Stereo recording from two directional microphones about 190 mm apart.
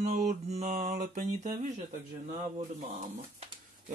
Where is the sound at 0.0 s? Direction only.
40° right (ahead or behind).